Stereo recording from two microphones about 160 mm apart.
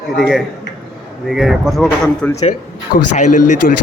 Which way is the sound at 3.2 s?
50° left (ahead or behind).